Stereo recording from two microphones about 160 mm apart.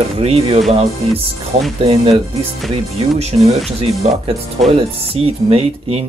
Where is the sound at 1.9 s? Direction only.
35° right (ahead or behind).